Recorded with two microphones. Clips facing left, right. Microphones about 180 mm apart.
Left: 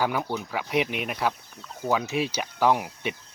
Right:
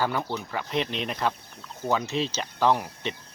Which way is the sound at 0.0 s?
10° left (ahead or behind).